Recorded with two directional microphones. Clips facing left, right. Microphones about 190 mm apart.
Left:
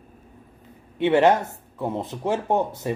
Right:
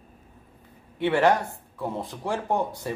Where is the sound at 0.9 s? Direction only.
20° left (ahead or behind).